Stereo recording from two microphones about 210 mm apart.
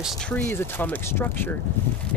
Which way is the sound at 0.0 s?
Centre (ahead or behind).